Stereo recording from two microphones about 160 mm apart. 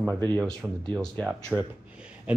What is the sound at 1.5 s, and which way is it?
Speech, 10° right (ahead or behind).